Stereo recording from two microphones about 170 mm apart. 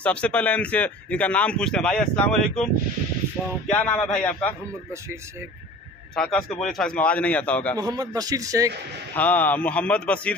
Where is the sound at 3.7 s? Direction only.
10° left (ahead or behind).